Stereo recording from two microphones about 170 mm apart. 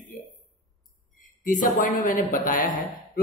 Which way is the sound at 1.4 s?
50° left (ahead or behind).